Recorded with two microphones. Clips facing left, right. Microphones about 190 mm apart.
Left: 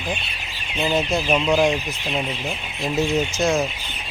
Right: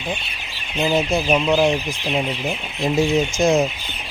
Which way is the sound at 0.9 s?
10° right (ahead or behind).